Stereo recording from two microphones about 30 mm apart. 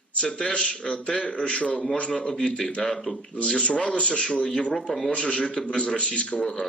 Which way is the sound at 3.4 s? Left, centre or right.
Left.